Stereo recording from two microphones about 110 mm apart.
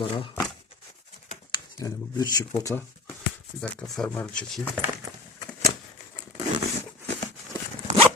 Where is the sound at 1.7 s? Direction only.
30° left (ahead or behind).